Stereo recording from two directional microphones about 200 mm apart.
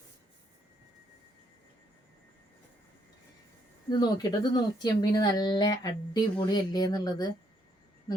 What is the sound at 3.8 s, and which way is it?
A woman's voice, 20° left (ahead or behind).